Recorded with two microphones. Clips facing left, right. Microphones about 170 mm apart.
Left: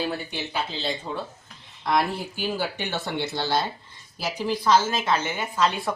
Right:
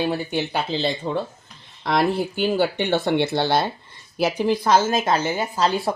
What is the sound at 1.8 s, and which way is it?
A woman's voice, 65° right (ahead or behind).